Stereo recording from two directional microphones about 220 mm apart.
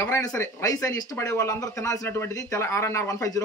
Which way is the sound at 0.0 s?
15° left (ahead or behind).